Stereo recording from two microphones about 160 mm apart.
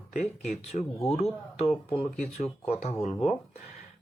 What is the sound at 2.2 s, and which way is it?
Speech, 40° left (ahead or behind).